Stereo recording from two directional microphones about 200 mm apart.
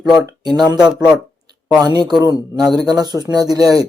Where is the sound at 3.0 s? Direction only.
20° right (ahead or behind).